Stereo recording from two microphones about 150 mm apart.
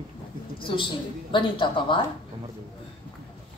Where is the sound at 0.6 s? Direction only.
35° left (ahead or behind).